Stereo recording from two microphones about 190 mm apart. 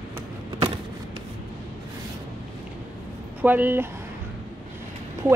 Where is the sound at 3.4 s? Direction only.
10° right (ahead or behind).